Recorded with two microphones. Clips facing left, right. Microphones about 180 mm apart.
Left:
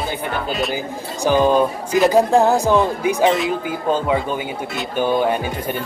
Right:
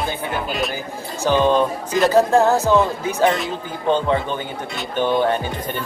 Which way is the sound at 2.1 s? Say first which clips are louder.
Right 1 dB; 15° left (ahead or behind).